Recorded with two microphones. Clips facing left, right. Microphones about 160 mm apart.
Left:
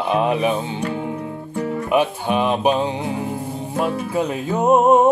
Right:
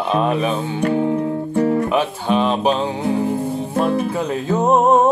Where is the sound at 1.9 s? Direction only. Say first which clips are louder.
Even; 10° left (ahead or behind).